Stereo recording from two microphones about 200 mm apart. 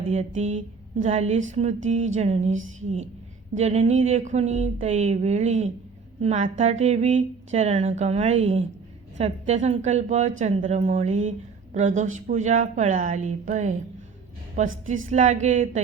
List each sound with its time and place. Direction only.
0.1 s a woman's voice: 35° right (ahead or behind)